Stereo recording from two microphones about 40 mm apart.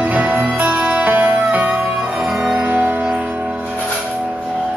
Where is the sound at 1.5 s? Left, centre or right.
Right.